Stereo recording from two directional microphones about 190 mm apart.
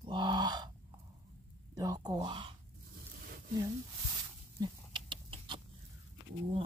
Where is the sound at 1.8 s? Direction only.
20° right (ahead or behind).